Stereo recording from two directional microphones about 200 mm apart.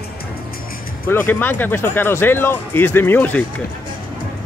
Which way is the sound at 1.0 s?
10° left (ahead or behind).